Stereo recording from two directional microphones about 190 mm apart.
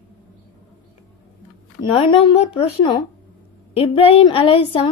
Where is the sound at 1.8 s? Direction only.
25° left (ahead or behind).